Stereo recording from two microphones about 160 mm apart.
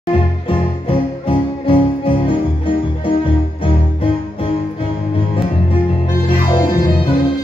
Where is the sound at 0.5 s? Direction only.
35° left (ahead or behind).